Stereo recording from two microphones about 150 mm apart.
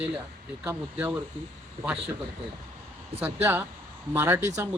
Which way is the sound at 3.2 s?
15° right (ahead or behind).